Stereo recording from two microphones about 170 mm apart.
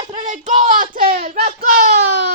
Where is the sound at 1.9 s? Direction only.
65° right (ahead or behind).